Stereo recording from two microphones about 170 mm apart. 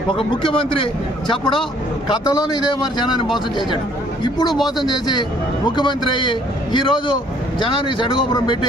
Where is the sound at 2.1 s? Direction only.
25° left (ahead or behind).